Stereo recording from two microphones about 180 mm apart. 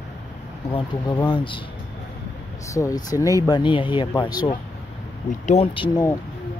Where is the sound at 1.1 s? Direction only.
25° left (ahead or behind).